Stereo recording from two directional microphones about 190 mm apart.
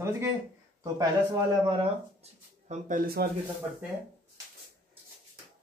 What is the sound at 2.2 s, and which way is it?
Speech, 40° right (ahead or behind).